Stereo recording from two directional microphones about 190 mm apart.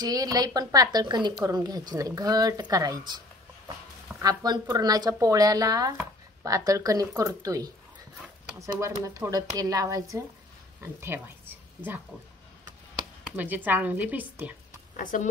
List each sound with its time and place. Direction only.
0.0 s a woman's voice: 20° right (ahead or behind)
4.2 s a woman's voice: 20° right (ahead or behind)
13.4 s speech: 10° right (ahead or behind)
15.0 s speech: 45° left (ahead or behind)